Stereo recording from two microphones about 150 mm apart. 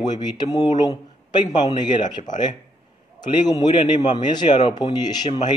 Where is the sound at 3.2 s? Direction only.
30° left (ahead or behind).